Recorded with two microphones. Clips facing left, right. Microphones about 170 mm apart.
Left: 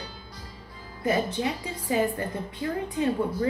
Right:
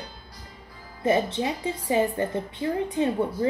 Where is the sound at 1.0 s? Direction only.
25° right (ahead or behind).